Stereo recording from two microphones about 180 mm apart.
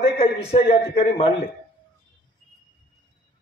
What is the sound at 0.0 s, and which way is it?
A man's voice, 35° left (ahead or behind).